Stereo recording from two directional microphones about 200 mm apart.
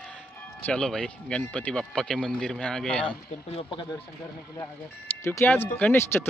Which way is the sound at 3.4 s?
30° left (ahead or behind).